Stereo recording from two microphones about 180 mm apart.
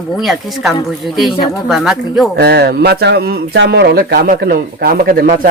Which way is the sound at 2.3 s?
70° right (ahead or behind).